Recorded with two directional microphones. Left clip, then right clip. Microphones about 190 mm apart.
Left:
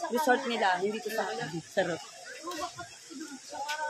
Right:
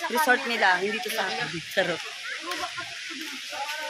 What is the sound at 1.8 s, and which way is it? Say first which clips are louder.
Speech: right 4 dB; 15° right (ahead or behind).